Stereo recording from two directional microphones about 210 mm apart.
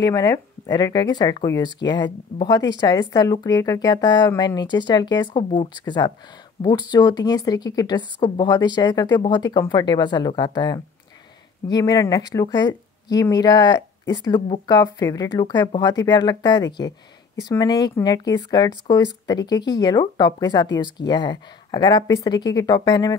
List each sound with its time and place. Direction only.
0.0 s speech: 15° left (ahead or behind)